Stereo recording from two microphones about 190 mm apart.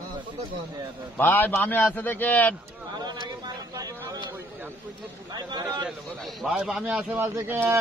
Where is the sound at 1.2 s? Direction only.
10° left (ahead or behind).